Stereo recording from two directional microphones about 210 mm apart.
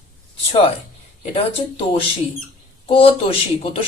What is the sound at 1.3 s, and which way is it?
Speech, 25° left (ahead or behind).